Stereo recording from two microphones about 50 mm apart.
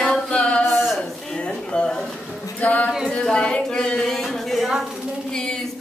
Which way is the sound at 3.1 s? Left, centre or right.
Centre.